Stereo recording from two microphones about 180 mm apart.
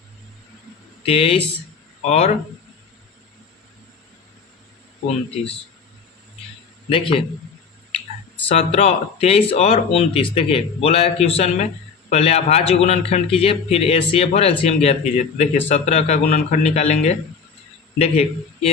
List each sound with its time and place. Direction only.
1.0 s speech: 30° left (ahead or behind)
6.9 s speech: 30° left (ahead or behind)
8.4 s a man's voice: 35° left (ahead or behind)